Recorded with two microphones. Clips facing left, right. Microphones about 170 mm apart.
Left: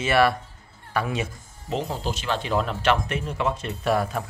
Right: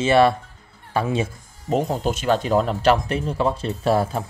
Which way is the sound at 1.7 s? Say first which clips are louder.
Right 6 dB; 50° right (ahead or behind).